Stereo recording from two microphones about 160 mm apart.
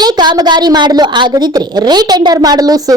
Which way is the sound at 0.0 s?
25° right (ahead or behind).